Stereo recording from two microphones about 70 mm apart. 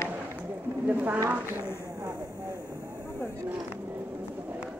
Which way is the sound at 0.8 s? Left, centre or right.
Right.